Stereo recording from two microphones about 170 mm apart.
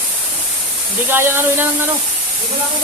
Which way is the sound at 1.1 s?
15° right (ahead or behind).